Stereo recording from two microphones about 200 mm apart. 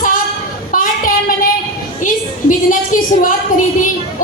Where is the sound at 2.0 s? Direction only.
40° left (ahead or behind).